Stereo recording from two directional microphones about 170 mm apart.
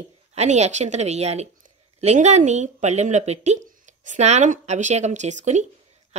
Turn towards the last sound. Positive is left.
turn(degrees=-45)  # may be behind; listen again after turning